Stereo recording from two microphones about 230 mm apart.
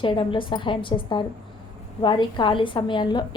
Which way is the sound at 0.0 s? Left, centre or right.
Left.